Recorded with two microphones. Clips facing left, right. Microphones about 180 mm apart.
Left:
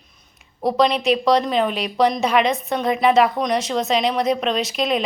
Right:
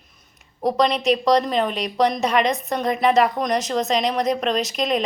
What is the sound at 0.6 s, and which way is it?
A woman's voice, 5° left (ahead or behind).